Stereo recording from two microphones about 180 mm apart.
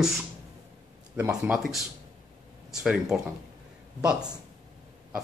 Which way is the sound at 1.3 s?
5° right (ahead or behind).